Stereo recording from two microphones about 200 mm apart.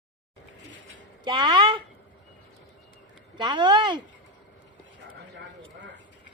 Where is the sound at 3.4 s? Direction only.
20° right (ahead or behind).